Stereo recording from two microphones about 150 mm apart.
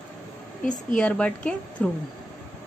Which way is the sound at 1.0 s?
5° left (ahead or behind).